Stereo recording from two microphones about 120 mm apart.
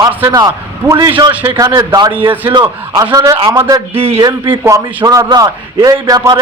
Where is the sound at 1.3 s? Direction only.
15° right (ahead or behind).